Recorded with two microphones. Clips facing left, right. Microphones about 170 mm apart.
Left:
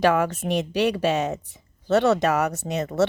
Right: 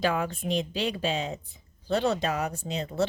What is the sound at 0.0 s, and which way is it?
Speech, 75° left (ahead or behind).